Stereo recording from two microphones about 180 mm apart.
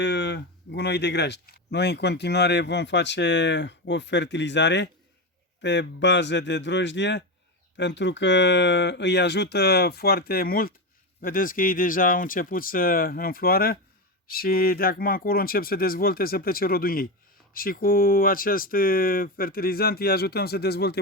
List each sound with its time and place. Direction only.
0.0 s speech: 70° left (ahead or behind)